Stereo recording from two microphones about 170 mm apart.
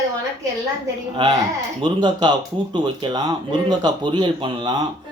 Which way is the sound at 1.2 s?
30° right (ahead or behind).